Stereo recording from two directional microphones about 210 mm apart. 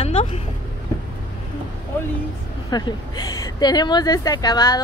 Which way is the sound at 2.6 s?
20° left (ahead or behind).